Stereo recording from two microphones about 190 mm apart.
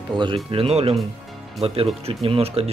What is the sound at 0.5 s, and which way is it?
Speech, 30° right (ahead or behind).